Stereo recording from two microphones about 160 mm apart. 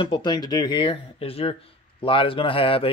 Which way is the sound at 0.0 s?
30° left (ahead or behind).